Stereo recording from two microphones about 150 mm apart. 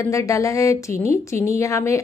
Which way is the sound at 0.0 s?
20° left (ahead or behind).